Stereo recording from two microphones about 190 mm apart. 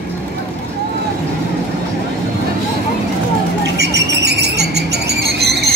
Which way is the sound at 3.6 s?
65° right (ahead or behind).